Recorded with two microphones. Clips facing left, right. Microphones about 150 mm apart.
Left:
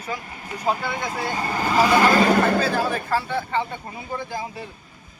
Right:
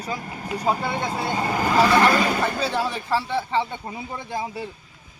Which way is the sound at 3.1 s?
25° right (ahead or behind).